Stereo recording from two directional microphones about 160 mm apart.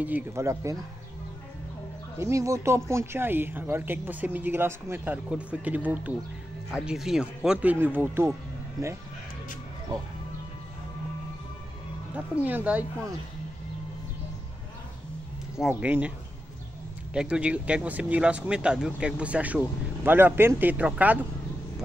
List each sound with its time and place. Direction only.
0.0 s speech: 15° right (ahead or behind)
2.1 s speech: 20° right (ahead or behind)
12.4 s speech: 10° right (ahead or behind)
15.5 s speech: 5° right (ahead or behind)
17.1 s speech: 5° right (ahead or behind)